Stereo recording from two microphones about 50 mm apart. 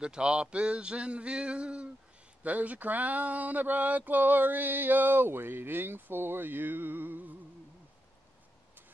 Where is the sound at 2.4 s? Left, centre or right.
Right.